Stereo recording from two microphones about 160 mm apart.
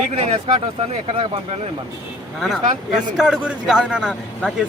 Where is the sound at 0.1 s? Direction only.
35° right (ahead or behind).